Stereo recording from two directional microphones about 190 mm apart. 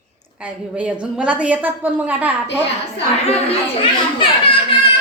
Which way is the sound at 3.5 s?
30° left (ahead or behind).